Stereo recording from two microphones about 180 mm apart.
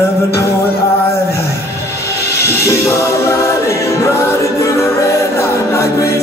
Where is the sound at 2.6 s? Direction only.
15° left (ahead or behind).